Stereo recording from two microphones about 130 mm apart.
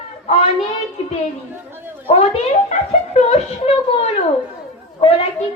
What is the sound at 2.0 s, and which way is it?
Speech, 50° left (ahead or behind).